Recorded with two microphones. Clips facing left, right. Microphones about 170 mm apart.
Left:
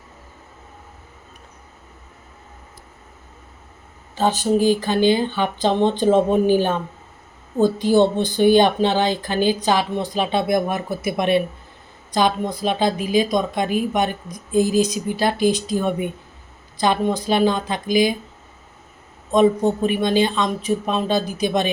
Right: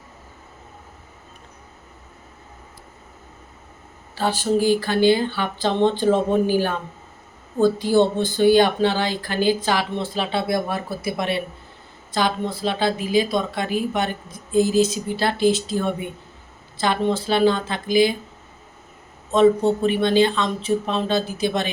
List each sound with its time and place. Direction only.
4.1 s speech: 20° left (ahead or behind)
19.3 s speech: 15° left (ahead or behind)